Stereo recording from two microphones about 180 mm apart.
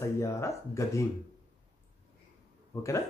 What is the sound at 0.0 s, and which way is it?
Speech, 15° left (ahead or behind).